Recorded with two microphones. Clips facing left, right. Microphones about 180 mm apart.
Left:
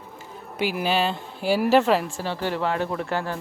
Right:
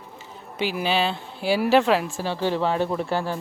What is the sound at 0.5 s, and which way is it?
Speech, 10° left (ahead or behind).